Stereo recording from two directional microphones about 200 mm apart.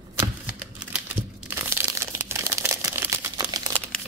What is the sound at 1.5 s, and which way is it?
Crumpling, 10° right (ahead or behind).